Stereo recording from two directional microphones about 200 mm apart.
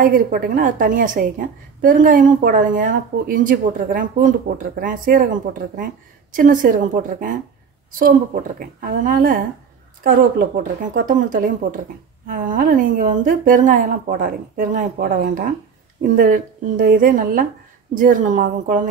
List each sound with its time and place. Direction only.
0.0 s a woman's voice: 45° right (ahead or behind)